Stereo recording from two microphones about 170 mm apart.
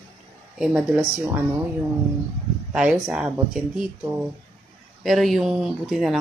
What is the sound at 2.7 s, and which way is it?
Speech, 5° right (ahead or behind).